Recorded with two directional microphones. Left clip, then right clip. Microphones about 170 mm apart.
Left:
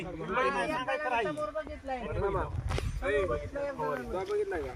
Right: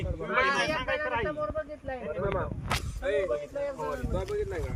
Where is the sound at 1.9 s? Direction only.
55° left (ahead or behind).